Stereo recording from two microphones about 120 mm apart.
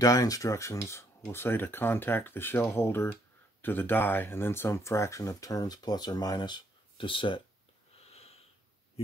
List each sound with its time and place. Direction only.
0.0 s speech: 30° left (ahead or behind); by 7.4 s 45° left (ahead or behind)
8.1 s sniff: 60° left (ahead or behind)